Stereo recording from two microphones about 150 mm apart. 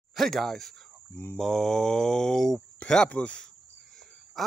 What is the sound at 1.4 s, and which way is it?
Speech, centre (ahead or behind).